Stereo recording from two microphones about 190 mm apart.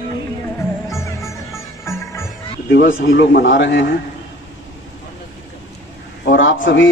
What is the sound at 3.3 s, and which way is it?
Speech, 70° left (ahead or behind).